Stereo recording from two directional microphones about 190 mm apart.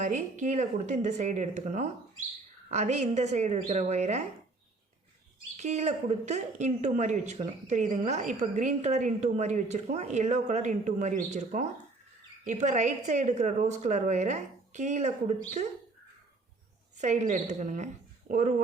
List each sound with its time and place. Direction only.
0.0 s a woman's voice: 40° right (ahead or behind)
5.5 s a woman's voice: 35° right (ahead or behind)
17.0 s a woman's voice: 40° right (ahead or behind)